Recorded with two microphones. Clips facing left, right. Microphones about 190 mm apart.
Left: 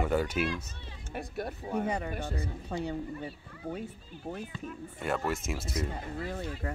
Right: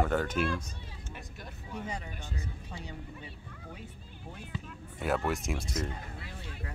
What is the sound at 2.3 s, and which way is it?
Speech, 35° left (ahead or behind).